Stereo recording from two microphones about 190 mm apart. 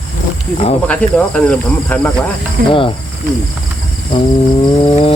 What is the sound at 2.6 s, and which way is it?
Speech, 50° right (ahead or behind).